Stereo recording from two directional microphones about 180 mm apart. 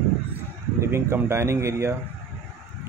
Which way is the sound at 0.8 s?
15° right (ahead or behind).